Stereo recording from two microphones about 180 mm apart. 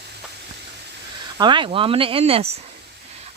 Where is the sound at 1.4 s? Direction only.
25° right (ahead or behind).